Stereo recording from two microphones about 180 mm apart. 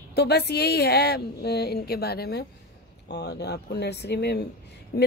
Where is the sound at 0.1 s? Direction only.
65° left (ahead or behind).